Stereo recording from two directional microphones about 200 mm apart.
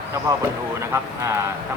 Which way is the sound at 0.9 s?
15° right (ahead or behind).